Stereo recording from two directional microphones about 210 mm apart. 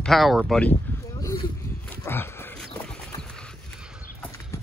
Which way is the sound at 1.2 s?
15° left (ahead or behind).